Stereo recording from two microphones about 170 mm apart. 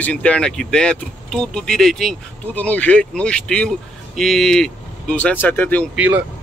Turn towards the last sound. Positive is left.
turn(degrees=-10)  # may be behind; listen again after turning